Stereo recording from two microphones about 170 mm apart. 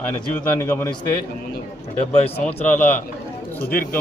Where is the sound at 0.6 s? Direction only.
15° left (ahead or behind).